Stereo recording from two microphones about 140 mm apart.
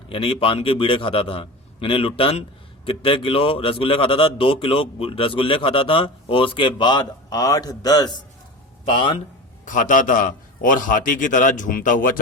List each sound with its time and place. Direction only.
0.1 s a man's voice: 40° left (ahead or behind)
9.6 s a man's voice: 70° left (ahead or behind)